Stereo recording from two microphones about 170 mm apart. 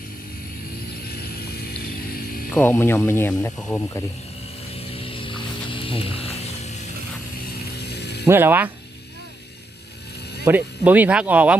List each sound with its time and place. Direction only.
2.6 s speech: 15° left (ahead or behind)
4.8 s a sound: 35° left (ahead or behind)
7.8 s ratchet: 75° left (ahead or behind)
8.3 s speech: 10° right (ahead or behind)
10.4 s speech: 10° right (ahead or behind)